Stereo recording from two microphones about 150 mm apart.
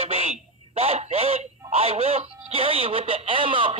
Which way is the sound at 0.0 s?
40° right (ahead or behind).